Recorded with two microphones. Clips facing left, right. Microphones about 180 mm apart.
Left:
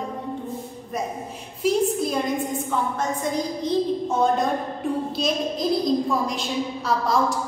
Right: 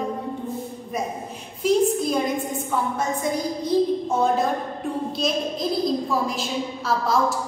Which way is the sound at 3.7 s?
10° right (ahead or behind).